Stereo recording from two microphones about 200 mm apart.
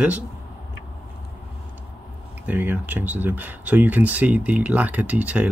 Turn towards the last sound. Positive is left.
turn(degrees=-5)  # may be behind; listen again after turning